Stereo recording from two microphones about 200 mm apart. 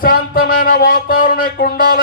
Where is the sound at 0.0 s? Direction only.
45° left (ahead or behind).